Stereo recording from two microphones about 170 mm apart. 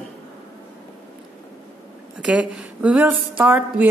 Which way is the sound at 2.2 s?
5° right (ahead or behind).